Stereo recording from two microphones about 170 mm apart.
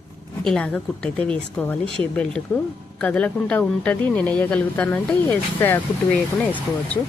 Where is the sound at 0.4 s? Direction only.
5° left (ahead or behind).